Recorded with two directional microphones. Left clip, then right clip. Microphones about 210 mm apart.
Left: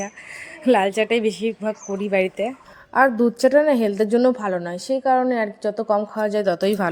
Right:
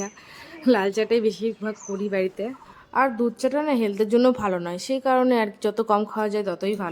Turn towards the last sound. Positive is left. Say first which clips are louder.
# left 6 dB
turn(degrees=20)  # may be behind; listen again after turning